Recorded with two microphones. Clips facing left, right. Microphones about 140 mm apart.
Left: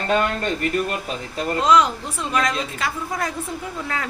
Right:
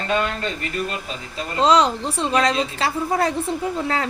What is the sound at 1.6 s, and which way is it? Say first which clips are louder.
A woman's voice: right 2 dB; 30° right (ahead or behind).